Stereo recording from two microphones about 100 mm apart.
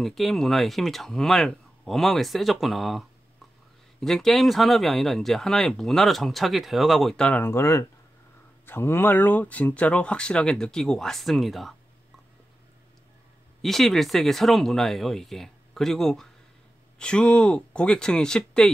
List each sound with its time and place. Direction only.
0.0 s speech: centre (ahead or behind)
7.4 s speech: 25° left (ahead or behind); by 11.7 s centre (ahead or behind)
13.6 s speech: 5° left (ahead or behind)